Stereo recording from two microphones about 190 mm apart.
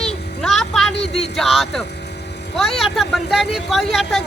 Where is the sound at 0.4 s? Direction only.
Centre (ahead or behind).